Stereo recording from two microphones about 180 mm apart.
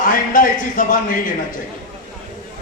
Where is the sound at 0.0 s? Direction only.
50° left (ahead or behind).